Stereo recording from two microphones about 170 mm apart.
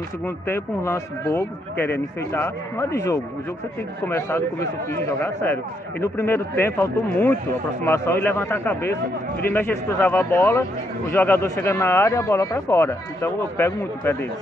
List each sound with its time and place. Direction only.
0.5 s a man's voice: 15° left (ahead or behind)